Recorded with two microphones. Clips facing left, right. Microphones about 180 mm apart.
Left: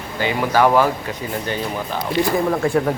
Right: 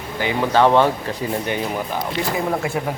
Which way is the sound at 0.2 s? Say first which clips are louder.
Even; 20° right (ahead or behind).